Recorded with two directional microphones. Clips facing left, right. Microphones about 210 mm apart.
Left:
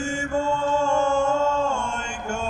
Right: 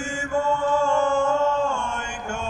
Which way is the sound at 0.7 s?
25° left (ahead or behind).